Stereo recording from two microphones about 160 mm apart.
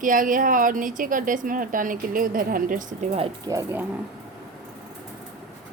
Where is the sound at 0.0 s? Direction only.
55° right (ahead or behind).